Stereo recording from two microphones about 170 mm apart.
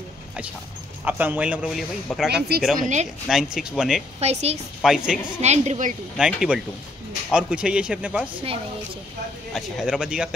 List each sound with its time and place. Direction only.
1.0 s a man's voice: 10° right (ahead or behind)
2.3 s speech: 70° right (ahead or behind)
2.7 s speech: 50° right (ahead or behind)
3.3 s speech: 5° right (ahead or behind)
4.2 s a woman's voice: 40° right (ahead or behind)
4.8 s speech: centre (ahead or behind)
5.4 s a woman's voice: 40° right (ahead or behind)
6.1 s speech: 5° right (ahead or behind)
9.5 s speech: centre (ahead or behind)